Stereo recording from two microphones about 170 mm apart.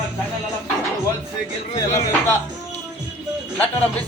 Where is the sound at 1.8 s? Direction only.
20° left (ahead or behind).